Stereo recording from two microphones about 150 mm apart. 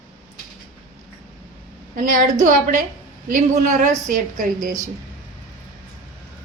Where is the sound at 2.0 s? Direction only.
60° right (ahead or behind).